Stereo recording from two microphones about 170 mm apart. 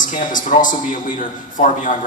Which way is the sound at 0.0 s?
50° left (ahead or behind).